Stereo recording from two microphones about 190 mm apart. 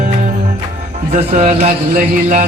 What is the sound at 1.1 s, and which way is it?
A man's voice, 35° right (ahead or behind).